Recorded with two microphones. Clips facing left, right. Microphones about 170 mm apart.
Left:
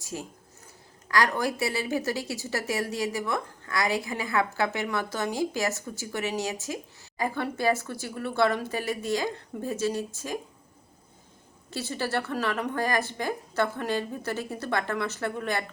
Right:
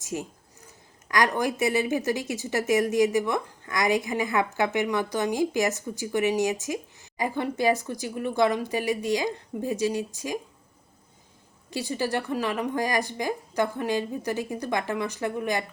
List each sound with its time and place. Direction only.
0.0 s a woman's voice: 20° right (ahead or behind)
11.7 s a woman's voice: 15° right (ahead or behind)